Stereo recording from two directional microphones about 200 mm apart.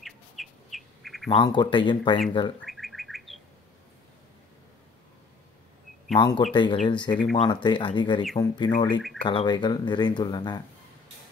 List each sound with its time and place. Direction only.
0.0 s bird: centre (ahead or behind)
1.3 s speech: 25° left (ahead or behind)
2.7 s bird: centre (ahead or behind)
6.1 s speech: 25° left (ahead or behind)